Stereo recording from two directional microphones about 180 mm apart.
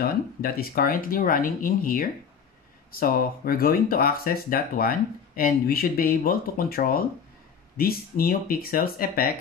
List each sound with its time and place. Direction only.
0.0 s speech: 55° left (ahead or behind)